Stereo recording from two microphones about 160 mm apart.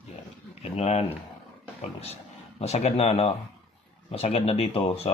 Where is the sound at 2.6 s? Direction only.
40° left (ahead or behind).